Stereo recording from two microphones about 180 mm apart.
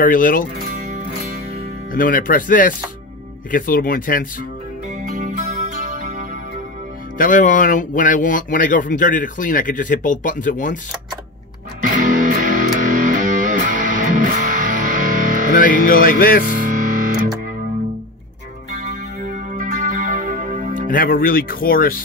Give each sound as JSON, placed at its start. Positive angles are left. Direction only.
{"t": 0.0, "sound": "speech", "side_deg": 50}
{"t": 1.9, "sound": "speech", "side_deg": 50}
{"t": 4.8, "sound": "music", "side_deg": -45}
{"t": 7.2, "sound": "speech", "side_deg": 45}
{"t": 11.8, "sound": "music", "side_deg": -45}
{"t": 15.8, "sound": "speech", "side_deg": 50}
{"t": 16.5, "sound": "music", "side_deg": -45}
{"t": 18.8, "sound": "music", "side_deg": -45}
{"t": 20.7, "sound": "speech", "side_deg": 50}